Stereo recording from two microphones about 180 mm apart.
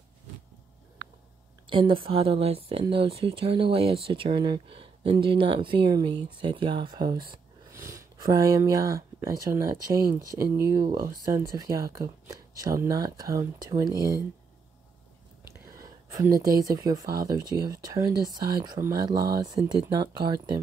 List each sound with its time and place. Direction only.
1.7 s speech: 30° right (ahead or behind)
15.7 s a sound: 20° right (ahead or behind)
16.4 s speech: 20° right (ahead or behind)